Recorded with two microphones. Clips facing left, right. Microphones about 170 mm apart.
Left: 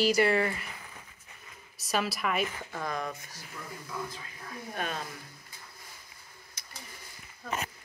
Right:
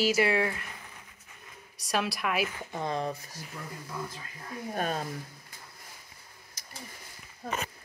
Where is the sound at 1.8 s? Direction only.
Centre (ahead or behind).